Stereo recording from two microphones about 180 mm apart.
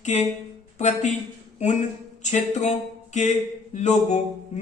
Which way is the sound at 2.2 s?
40° left (ahead or behind).